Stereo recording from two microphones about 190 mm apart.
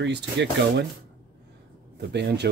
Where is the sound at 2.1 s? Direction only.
65° right (ahead or behind).